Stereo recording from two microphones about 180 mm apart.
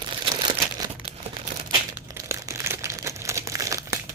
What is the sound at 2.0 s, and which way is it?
Crumpling, 15° right (ahead or behind).